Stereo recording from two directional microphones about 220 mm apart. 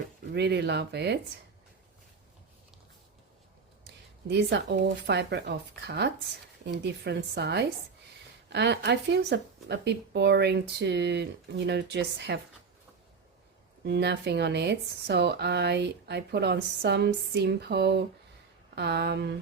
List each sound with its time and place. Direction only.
0.3 s speech: 50° right (ahead or behind)
4.3 s speech: 50° right (ahead or behind)
13.8 s speech: 50° right (ahead or behind)